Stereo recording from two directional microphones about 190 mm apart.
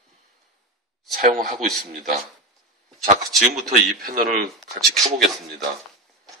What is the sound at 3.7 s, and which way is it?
Speech, 45° right (ahead or behind).